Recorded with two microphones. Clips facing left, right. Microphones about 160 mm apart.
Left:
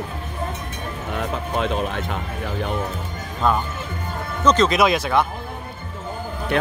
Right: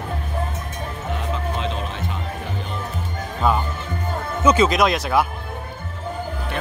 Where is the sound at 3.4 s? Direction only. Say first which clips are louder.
Even; 5° right (ahead or behind).